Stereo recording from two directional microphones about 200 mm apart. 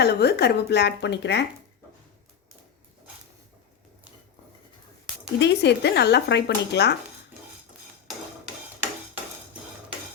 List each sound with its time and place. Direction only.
0.0 s speech: 55° left (ahead or behind)
5.4 s speech: 60° left (ahead or behind)